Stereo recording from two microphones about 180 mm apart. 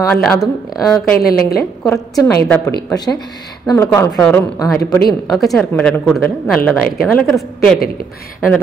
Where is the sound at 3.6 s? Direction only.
15° left (ahead or behind).